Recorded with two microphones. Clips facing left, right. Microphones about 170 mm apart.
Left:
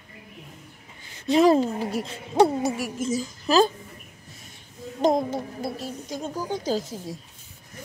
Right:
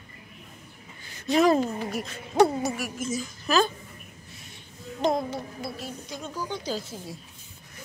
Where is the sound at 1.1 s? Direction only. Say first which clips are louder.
Left 3 dB; 30° left (ahead or behind).